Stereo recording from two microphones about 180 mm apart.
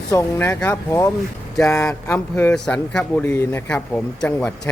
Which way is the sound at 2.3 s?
5° left (ahead or behind).